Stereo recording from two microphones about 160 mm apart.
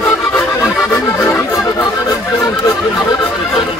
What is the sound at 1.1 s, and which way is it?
Accordion, 15° left (ahead or behind).